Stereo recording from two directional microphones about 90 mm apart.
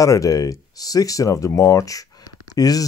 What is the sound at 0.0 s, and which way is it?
Speech, 40° left (ahead or behind).